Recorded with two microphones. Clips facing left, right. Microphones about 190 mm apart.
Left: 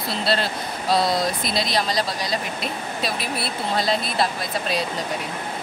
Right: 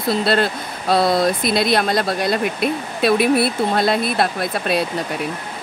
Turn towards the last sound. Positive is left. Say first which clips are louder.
# right 5 dB
turn(degrees=-60)  # may be behind; listen again after turning